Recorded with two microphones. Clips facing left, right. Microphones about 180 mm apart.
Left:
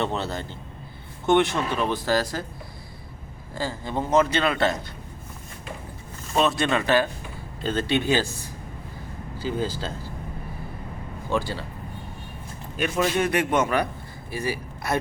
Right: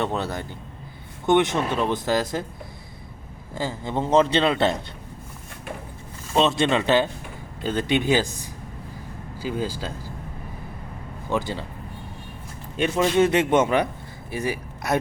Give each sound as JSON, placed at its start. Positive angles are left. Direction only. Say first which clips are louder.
{"t": 0.0, "sound": "a man's voice", "louder": "right 1 dB", "side_deg": -15}
{"t": 3.5, "sound": "a man's voice", "louder": "right 1 dB", "side_deg": -20}
{"t": 6.3, "sound": "a man's voice", "louder": "right 2 dB", "side_deg": -25}
{"t": 11.3, "sound": "a man's voice", "louder": "right 1 dB", "side_deg": -20}
{"t": 12.7, "sound": "a man's voice", "louder": "right 3 dB", "side_deg": -25}